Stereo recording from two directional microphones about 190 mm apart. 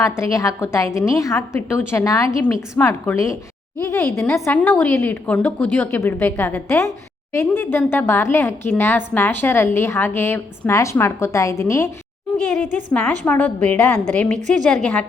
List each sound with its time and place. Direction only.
0.0 s a woman's voice: 15° left (ahead or behind)
12.5 s a woman's voice: 40° right (ahead or behind)
12.9 s a woman's voice: 10° left (ahead or behind)